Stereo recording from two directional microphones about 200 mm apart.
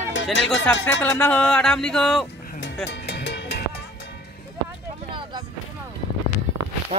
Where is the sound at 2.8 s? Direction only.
60° left (ahead or behind).